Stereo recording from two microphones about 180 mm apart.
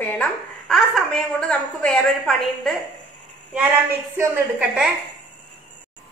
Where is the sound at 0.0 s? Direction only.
5° left (ahead or behind).